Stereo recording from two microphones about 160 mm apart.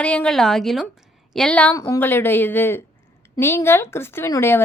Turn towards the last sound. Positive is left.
turn(degrees=15)  # may be behind; listen again after turning